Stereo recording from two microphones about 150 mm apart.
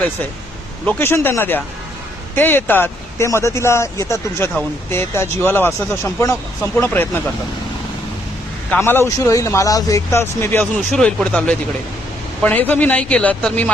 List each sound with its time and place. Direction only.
0.9 s speech: 15° left (ahead or behind)
8.8 s speech: 15° left (ahead or behind)
10.9 s speech: 5° left (ahead or behind)